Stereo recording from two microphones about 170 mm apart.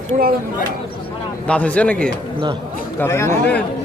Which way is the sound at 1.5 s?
5° left (ahead or behind).